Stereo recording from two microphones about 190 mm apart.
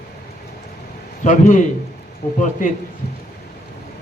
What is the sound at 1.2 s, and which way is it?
Speech, 40° left (ahead or behind).